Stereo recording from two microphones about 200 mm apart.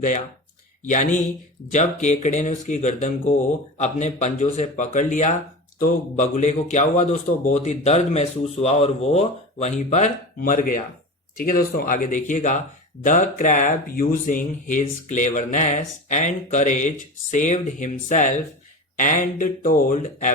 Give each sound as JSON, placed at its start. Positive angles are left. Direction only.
{"t": 0.9, "sound": "a man's voice", "side_deg": 40}